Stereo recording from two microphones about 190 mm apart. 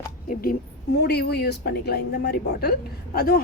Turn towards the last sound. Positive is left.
turn(degrees=55)  # may be behind; listen again after turning